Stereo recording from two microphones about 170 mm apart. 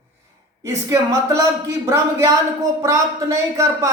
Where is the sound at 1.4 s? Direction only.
20° right (ahead or behind).